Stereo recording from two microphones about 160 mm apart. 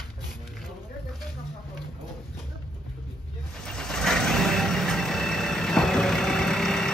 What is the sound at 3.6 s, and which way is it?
Vehicle, 5° left (ahead or behind).